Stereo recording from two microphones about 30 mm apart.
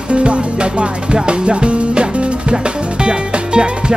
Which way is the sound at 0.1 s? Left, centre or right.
Right.